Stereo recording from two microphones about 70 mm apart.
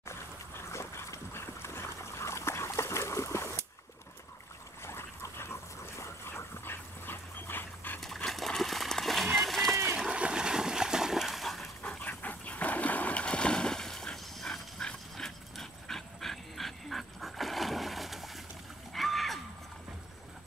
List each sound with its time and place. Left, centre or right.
0.7 s dog: left
4.8 s dog: left
8.0 s horse: centre
9.9 s splash: centre
11.8 s dog: centre
18.9 s a sound: centre